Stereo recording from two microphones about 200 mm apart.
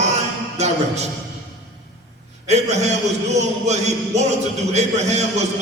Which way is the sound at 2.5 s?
35° right (ahead or behind).